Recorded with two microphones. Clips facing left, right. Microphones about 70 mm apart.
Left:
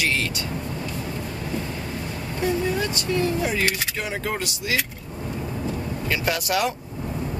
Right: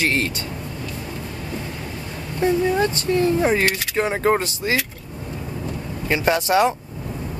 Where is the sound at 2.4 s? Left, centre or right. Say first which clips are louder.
Right 5 dB; right.